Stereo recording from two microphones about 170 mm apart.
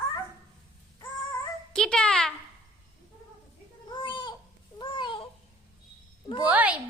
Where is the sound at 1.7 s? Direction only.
5° left (ahead or behind).